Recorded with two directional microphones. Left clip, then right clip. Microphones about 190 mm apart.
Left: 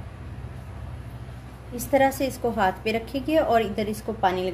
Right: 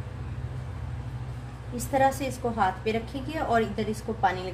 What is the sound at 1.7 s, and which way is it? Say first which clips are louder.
A woman's voice: left 3 dB; 60° left (ahead or behind).